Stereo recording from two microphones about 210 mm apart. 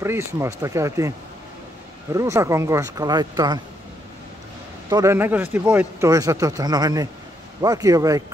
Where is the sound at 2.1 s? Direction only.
15° right (ahead or behind).